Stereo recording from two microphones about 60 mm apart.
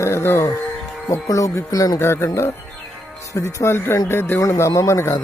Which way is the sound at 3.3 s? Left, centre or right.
Left.